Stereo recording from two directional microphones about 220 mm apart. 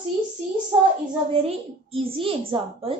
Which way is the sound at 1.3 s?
25° right (ahead or behind).